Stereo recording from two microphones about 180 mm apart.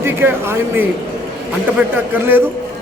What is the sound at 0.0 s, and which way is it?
Speech, 10° right (ahead or behind).